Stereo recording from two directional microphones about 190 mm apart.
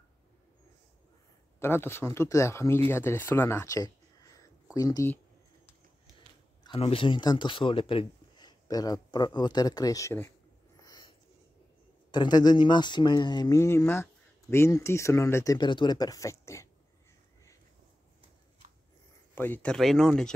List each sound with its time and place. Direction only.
1.6 s speech: 10° left (ahead or behind)
6.6 s speech: 30° left (ahead or behind)
10.8 s a sound: 20° left (ahead or behind)
12.1 s speech: 20° left (ahead or behind)
19.3 s speech: 10° left (ahead or behind)